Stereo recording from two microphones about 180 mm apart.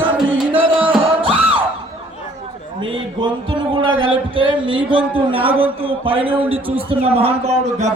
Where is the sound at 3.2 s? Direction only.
25° right (ahead or behind).